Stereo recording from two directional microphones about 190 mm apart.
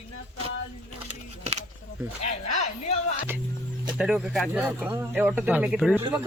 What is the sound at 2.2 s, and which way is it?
Speech, 35° left (ahead or behind).